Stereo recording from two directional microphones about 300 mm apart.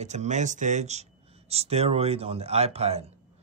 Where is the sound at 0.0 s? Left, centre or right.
Right.